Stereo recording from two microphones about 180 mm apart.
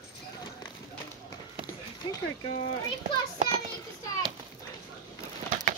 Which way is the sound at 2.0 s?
25° left (ahead or behind).